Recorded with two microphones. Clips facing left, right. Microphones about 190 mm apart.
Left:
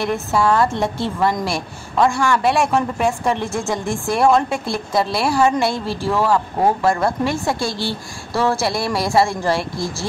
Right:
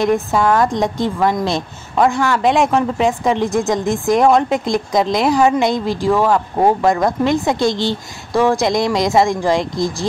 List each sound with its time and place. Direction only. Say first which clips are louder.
0.0 s speech: right 4 dB; 15° right (ahead or behind)